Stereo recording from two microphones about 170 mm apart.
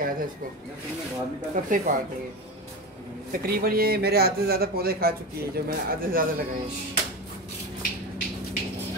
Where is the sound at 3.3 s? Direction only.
60° right (ahead or behind).